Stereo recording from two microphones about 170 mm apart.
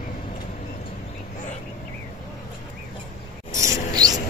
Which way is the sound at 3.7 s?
20° right (ahead or behind).